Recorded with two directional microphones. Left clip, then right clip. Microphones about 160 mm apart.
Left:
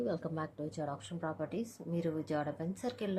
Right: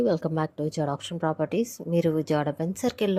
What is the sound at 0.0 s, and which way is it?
A woman's voice, 60° right (ahead or behind).